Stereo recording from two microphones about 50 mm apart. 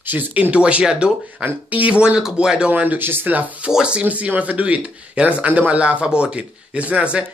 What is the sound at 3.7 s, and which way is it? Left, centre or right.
Speech, centre.